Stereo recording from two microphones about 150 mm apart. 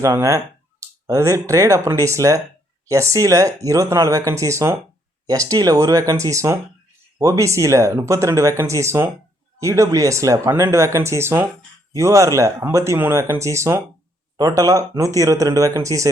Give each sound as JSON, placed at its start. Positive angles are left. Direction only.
{"t": 0.0, "sound": "speech", "side_deg": -20}